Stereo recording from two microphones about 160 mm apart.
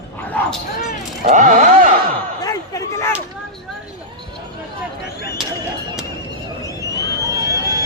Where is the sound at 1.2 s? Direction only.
50° right (ahead or behind).